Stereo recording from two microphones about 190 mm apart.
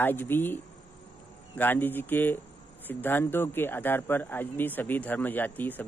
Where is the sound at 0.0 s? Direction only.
10° left (ahead or behind).